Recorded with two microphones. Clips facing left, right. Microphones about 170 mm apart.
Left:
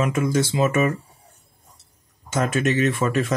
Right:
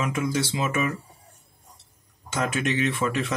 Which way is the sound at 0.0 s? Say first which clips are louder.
Left 5 dB; 50° left (ahead or behind).